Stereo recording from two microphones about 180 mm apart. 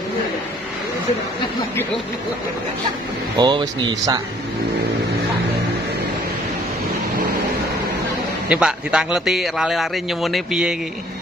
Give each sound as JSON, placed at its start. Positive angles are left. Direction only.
{"t": 3.3, "sound": "speech", "side_deg": -25}
{"t": 8.5, "sound": "a man's voice", "side_deg": -5}